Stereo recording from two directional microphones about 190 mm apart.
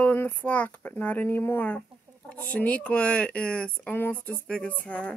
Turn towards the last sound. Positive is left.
turn(degrees=5)  # may be behind; listen again after turning